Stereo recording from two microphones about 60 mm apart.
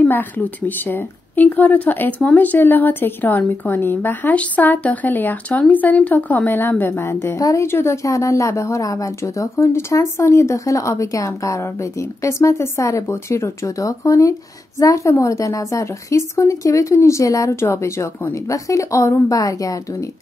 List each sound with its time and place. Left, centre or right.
0.1 s a woman's voice: left
7.3 s speech: left
7.6 s speech: left
17.6 s speech: left
18.5 s speech: left